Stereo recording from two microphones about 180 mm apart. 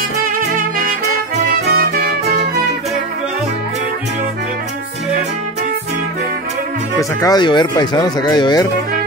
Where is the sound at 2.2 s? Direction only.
65° right (ahead or behind).